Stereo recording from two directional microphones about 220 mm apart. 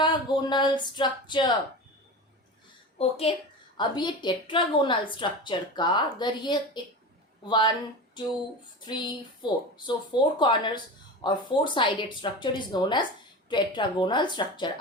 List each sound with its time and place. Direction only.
0.0 s speech: 20° left (ahead or behind)
3.0 s speech: 25° left (ahead or behind)
8.8 s speech: 20° left (ahead or behind)